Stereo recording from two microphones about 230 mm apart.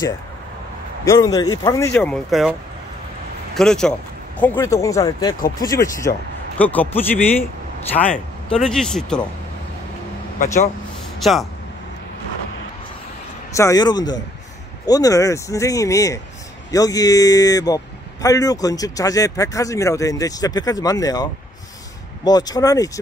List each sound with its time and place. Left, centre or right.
1.0 s a man's voice: centre
3.5 s a man's voice: centre
10.4 s speech: left
11.1 s speech: centre
13.6 s a man's voice: centre